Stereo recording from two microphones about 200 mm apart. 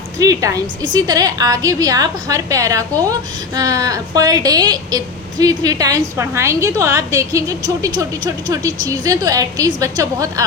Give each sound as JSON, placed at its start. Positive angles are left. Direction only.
{"t": 0.2, "sound": "a woman's voice", "side_deg": -15}